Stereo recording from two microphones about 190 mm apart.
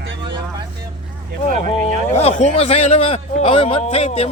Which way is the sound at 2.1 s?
30° left (ahead or behind).